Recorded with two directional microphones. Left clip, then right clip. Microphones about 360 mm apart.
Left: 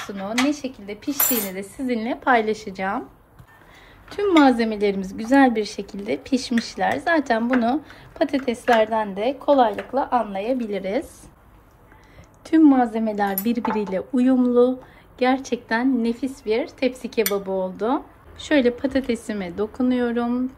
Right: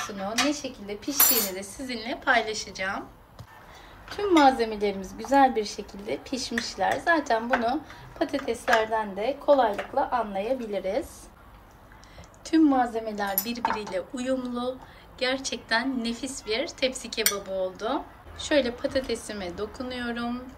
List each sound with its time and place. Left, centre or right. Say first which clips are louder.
0.0 s a woman's voice: left 3 dB; left
4.1 s a woman's voice: left 3 dB; centre
12.4 s a woman's voice: left 6 dB; centre